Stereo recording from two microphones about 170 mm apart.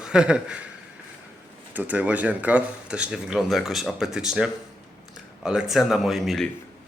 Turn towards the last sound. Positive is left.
turn(degrees=0)  # may be behind; listen again after turning